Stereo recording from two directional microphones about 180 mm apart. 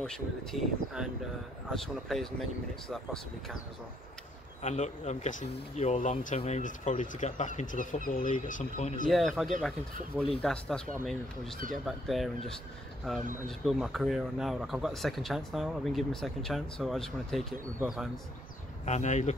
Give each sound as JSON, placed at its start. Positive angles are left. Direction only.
{"t": 0.0, "sound": "speech", "side_deg": 5}
{"t": 4.6, "sound": "speech", "side_deg": 40}
{"t": 9.1, "sound": "speech", "side_deg": 0}
{"t": 18.9, "sound": "speech", "side_deg": 40}